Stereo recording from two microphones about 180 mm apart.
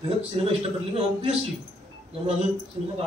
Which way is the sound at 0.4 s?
35° right (ahead or behind).